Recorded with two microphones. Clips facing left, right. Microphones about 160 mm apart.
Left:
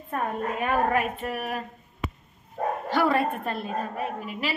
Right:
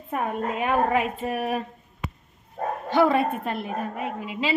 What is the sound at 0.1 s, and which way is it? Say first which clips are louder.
A woman's voice: right 2 dB; 15° right (ahead or behind).